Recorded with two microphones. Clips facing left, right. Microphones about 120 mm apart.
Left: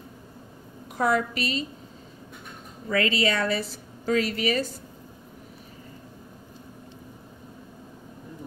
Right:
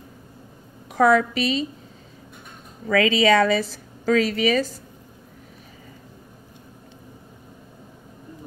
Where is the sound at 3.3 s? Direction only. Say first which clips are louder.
Right 8 dB; 90° right.